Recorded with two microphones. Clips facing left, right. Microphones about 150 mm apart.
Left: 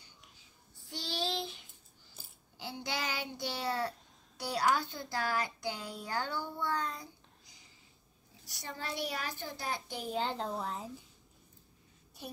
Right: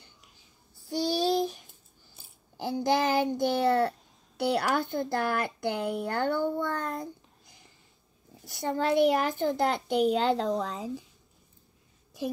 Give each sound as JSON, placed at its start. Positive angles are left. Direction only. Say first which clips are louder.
{"t": 0.8, "sound": "child singing", "louder": "right 11 dB", "side_deg": -40}
{"t": 2.5, "sound": "a child's voice", "louder": "right 13 dB", "side_deg": -45}